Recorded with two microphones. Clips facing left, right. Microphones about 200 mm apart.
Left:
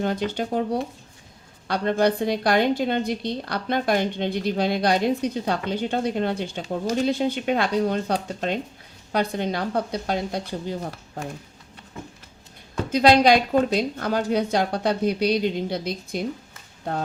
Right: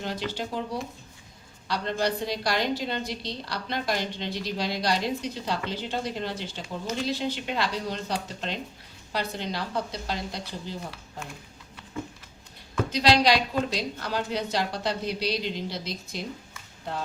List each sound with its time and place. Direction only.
0.0 s a woman's voice: 55° left (ahead or behind)
12.9 s speech: 50° left (ahead or behind)